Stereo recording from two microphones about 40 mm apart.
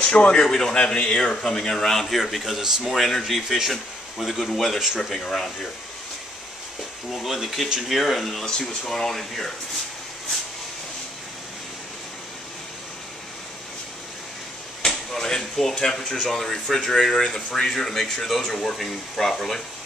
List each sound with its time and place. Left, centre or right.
0.0 s speech: left
0.5 s speech: centre
2.4 s speech: centre
7.1 s speech: centre
14.8 s a sound: centre
15.7 s speech: centre